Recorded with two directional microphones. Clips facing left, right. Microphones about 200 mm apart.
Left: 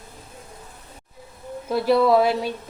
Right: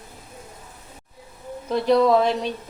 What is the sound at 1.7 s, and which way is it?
Speech, 5° left (ahead or behind).